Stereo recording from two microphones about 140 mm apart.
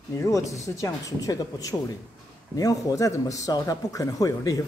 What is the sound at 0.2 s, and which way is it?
Speech, 20° left (ahead or behind).